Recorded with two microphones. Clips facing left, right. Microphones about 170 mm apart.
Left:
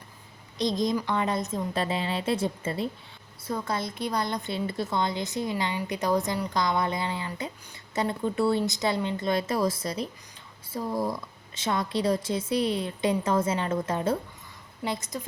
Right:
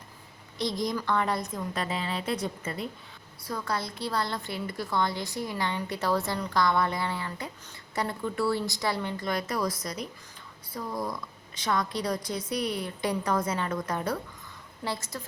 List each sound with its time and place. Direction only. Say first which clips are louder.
0.6 s a woman's voice: left 4 dB; 20° left (ahead or behind)